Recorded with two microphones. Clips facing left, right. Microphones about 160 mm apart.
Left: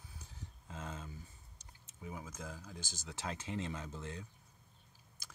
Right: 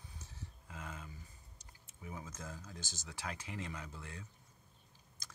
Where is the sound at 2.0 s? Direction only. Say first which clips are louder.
Left 1 dB; 10° left (ahead or behind).